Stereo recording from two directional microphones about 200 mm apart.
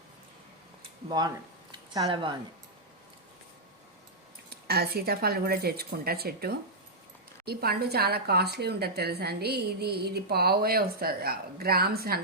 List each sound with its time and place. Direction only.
2.0 s speech: 25° right (ahead or behind)
4.4 s speech: 50° right (ahead or behind)